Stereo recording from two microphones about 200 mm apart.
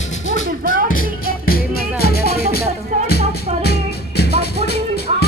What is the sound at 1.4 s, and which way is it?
Music, 50° left (ahead or behind).